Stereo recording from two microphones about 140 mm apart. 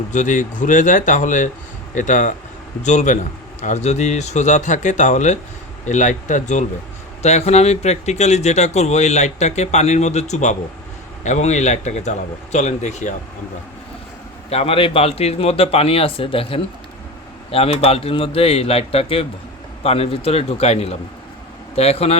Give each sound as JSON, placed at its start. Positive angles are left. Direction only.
{"t": 0.1, "sound": "a man's voice", "side_deg": 65}
{"t": 14.5, "sound": "speech", "side_deg": 45}